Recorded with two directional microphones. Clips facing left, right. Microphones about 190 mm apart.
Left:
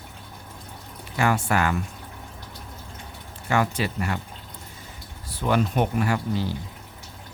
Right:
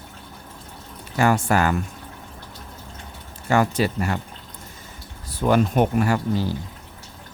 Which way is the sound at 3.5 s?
40° right (ahead or behind).